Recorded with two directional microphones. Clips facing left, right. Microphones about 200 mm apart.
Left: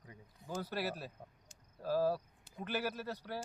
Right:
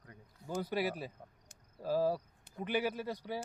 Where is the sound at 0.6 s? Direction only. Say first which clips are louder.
Right 4 dB; 15° right (ahead or behind).